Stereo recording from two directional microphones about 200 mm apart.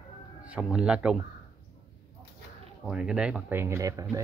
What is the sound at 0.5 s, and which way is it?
Speech, 5° right (ahead or behind).